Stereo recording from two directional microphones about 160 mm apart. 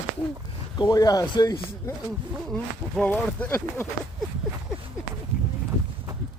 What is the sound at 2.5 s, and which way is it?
Speech, 5° left (ahead or behind).